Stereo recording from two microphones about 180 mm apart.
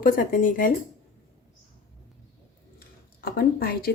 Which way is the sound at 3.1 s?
60° left (ahead or behind).